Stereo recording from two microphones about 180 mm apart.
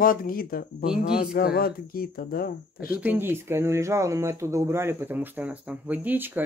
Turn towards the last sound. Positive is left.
turn(degrees=-10)  # may be behind; listen again after turning